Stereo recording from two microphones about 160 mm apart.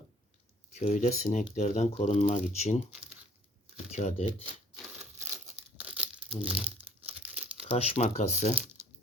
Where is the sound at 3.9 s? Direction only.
45° left (ahead or behind).